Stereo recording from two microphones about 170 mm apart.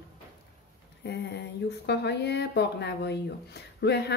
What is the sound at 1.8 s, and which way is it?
A woman's voice, 80° left.